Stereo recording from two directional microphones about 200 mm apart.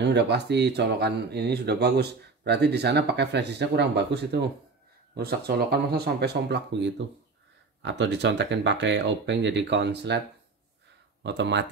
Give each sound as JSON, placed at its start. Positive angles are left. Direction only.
{"t": 0.0, "sound": "speech", "side_deg": -60}
{"t": 11.2, "sound": "speech", "side_deg": -60}